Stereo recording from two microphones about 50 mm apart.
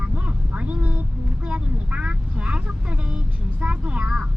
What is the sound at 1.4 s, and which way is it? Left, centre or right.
Speech, right.